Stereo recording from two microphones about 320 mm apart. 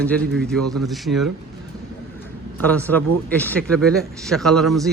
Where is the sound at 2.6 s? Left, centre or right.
Centre.